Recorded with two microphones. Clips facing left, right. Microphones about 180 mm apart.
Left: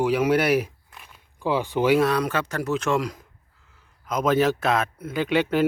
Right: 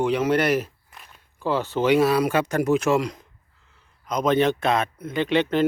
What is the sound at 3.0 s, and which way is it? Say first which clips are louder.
A man's voice: right 1 dB; centre (ahead or behind).